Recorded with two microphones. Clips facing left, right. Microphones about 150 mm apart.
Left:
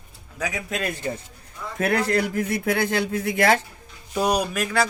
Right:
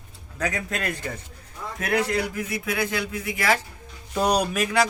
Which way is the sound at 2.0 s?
55° left (ahead or behind).